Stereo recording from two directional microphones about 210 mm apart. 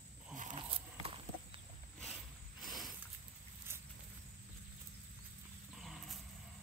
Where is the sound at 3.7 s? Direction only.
10° right (ahead or behind).